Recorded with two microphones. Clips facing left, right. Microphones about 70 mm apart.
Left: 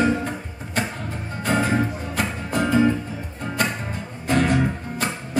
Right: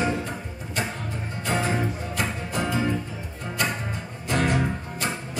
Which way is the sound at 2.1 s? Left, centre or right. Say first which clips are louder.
Left 6 dB; left.